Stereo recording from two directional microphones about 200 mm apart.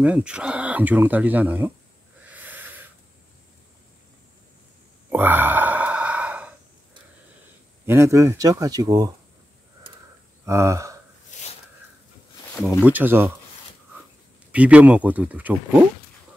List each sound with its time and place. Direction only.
0.0 s speech: 5° right (ahead or behind)
2.2 s owl: 10° right (ahead or behind)
5.1 s sigh: 10° right (ahead or behind)
7.8 s speech: 10° right (ahead or behind)
10.4 s speech: 15° right (ahead or behind)
11.3 s a sound: 35° left (ahead or behind)
12.8 s speech: 10° right (ahead or behind)
14.5 s speech: 5° right (ahead or behind)